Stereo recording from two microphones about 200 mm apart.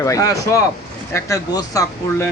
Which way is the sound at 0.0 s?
15° left (ahead or behind).